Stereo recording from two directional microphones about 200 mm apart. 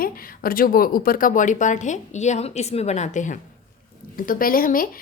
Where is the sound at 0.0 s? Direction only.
45° left (ahead or behind).